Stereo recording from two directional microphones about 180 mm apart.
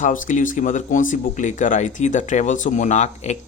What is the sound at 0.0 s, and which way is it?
Speech, 45° left (ahead or behind).